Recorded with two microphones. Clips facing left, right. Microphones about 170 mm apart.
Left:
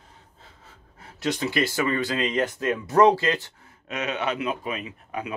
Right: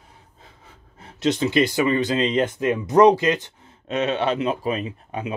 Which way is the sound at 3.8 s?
30° right (ahead or behind).